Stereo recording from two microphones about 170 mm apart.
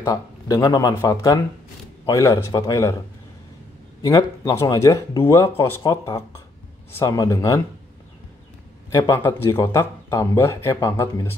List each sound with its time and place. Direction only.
0.0 s speech: 20° left (ahead or behind)
4.0 s speech: 20° left (ahead or behind)
8.9 s speech: 20° left (ahead or behind)